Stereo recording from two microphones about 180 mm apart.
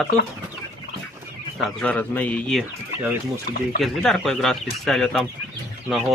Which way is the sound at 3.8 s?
Centre (ahead or behind).